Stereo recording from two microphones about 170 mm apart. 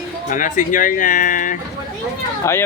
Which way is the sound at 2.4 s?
20° left (ahead or behind).